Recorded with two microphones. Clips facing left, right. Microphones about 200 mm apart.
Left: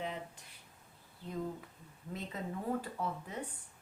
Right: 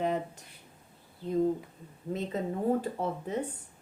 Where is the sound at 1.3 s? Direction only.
35° right (ahead or behind).